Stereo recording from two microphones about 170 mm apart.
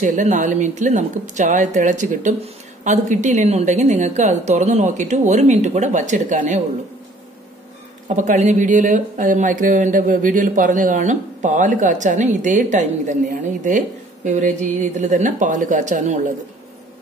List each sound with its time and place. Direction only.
0.0 s speech: 45° right (ahead or behind)
8.1 s speech: 45° right (ahead or behind)